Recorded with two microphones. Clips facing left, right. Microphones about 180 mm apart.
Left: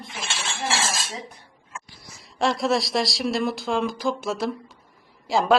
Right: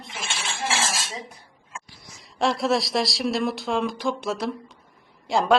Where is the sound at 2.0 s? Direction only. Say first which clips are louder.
Even; centre (ahead or behind).